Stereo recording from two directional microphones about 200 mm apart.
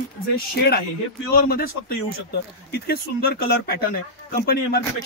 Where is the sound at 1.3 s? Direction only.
50° left (ahead or behind).